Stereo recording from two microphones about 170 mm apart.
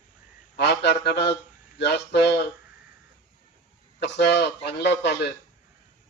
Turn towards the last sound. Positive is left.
turn(degrees=80)